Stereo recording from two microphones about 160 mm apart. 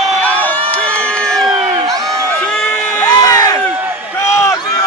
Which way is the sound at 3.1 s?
25° left (ahead or behind).